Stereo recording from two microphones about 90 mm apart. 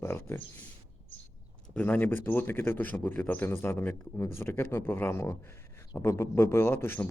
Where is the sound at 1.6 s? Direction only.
15° left (ahead or behind).